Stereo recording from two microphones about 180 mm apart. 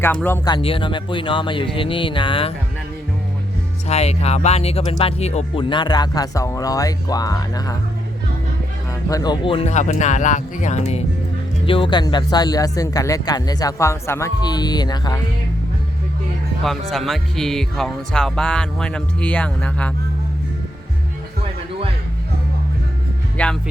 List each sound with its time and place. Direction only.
0.0 s speech: 10° left (ahead or behind)
0.4 s speech: 30° left (ahead or behind)
3.8 s speech: 35° left (ahead or behind); by 7.8 s 20° left (ahead or behind)
9.0 s speech: 20° left (ahead or behind)
16.6 s speech: centre (ahead or behind)
23.4 s speech: 5° left (ahead or behind)